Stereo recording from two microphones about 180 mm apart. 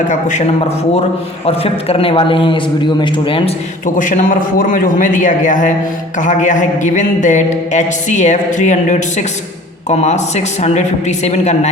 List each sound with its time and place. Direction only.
0.1 s a man's voice: 40° left (ahead or behind)
3.9 s speech: 45° left (ahead or behind)